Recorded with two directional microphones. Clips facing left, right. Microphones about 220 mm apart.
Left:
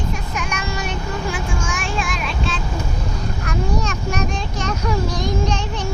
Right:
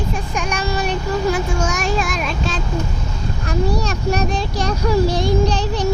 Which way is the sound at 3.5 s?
35° right (ahead or behind).